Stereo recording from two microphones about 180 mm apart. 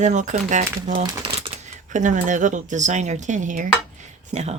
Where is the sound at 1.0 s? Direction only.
25° right (ahead or behind).